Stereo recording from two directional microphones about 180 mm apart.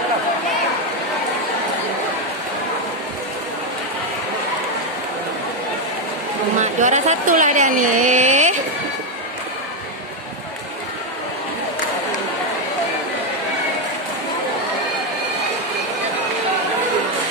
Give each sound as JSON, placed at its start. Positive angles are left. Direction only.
{"t": 6.6, "sound": "speech", "side_deg": -40}